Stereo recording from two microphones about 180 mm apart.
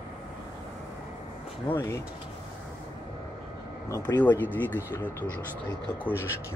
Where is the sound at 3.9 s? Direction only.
10° left (ahead or behind).